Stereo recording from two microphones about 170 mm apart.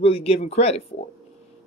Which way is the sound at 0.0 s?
35° left (ahead or behind).